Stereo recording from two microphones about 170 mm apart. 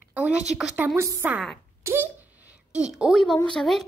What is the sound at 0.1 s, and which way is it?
A woman's voice, 5° right (ahead or behind).